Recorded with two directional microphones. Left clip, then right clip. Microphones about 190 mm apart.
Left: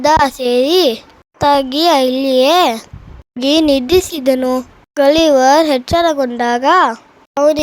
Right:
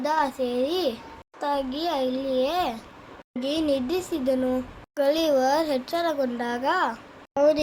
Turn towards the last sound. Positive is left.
turn(degrees=40)  # may be behind; listen again after turning